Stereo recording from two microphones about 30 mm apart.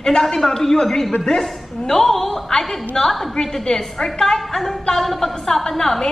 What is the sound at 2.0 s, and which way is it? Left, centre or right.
A woman's voice, centre.